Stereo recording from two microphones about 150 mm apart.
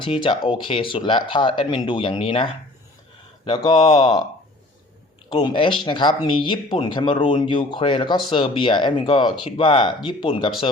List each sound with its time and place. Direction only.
0.0 s speech: 35° left (ahead or behind)
5.3 s speech: 30° left (ahead or behind)